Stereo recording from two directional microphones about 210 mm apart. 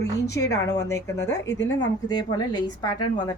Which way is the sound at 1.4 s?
60° left (ahead or behind).